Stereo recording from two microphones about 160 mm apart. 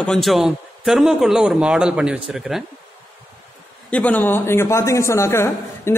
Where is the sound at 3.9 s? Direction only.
10° left (ahead or behind).